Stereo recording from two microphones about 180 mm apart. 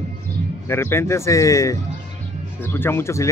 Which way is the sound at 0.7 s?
15° left (ahead or behind).